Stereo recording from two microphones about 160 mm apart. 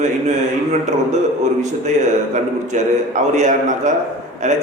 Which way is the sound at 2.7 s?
50° right (ahead or behind).